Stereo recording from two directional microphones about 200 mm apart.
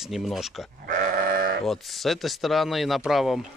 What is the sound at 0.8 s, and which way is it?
Sheep, 40° right (ahead or behind).